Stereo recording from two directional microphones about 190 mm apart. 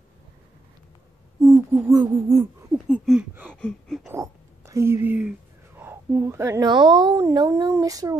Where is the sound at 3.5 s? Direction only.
5° left (ahead or behind).